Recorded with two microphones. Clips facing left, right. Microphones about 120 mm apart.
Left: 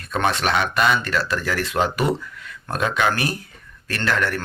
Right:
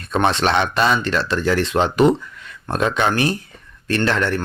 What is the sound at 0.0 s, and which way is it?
Speech, 30° right (ahead or behind).